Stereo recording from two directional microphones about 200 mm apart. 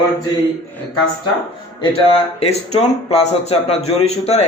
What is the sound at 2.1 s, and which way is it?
Speech, 30° left (ahead or behind).